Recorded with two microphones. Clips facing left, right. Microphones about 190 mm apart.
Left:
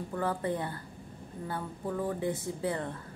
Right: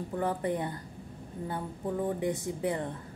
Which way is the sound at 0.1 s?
20° right (ahead or behind).